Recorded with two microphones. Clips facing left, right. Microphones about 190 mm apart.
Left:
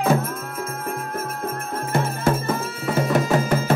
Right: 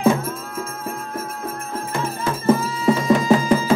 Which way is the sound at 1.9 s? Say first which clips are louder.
Left 4 dB; 60° left (ahead or behind).